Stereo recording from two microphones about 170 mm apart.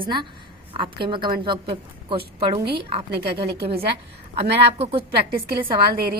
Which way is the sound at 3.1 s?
75° right (ahead or behind).